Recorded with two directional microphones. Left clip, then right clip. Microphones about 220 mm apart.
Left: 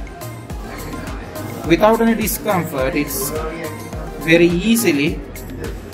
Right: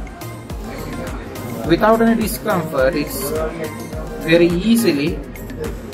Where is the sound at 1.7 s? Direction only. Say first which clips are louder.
Even; 30° left (ahead or behind).